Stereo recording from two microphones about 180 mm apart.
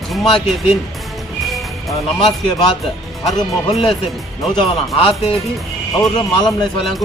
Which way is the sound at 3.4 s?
25° left (ahead or behind).